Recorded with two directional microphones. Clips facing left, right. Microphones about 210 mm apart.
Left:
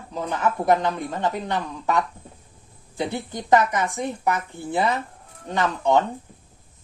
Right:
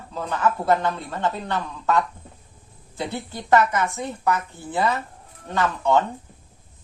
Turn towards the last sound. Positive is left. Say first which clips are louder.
# even
turn(degrees=15)  # may be behind; listen again after turning